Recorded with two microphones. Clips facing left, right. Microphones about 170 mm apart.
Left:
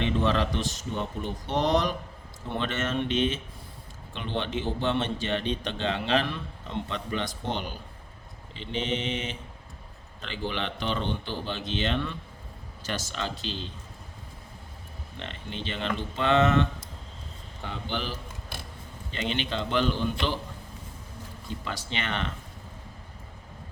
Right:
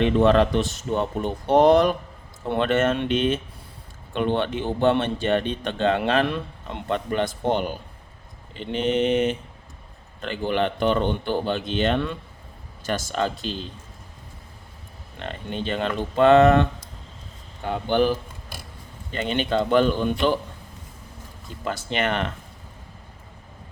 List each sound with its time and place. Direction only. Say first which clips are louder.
0.0 s speech: right 8 dB; 55° right (ahead or behind)
0.9 s a man's voice: right 7 dB; 70° right (ahead or behind); by 13.7 s 50° right (ahead or behind)
15.2 s a man's voice: right 7 dB; 50° right (ahead or behind)
17.7 s a man's voice: right 13 dB; 55° right (ahead or behind)
21.6 s a man's voice: right 10 dB; 50° right (ahead or behind)